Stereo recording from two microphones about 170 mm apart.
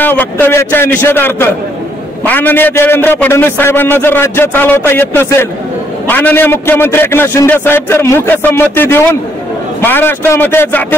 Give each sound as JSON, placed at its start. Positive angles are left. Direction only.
{"t": 0.0, "sound": "a man's voice", "side_deg": 10}